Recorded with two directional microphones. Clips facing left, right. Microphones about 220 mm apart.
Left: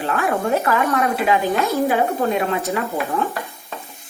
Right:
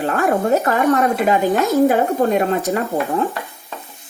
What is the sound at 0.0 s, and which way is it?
Dog, 45° right (ahead or behind).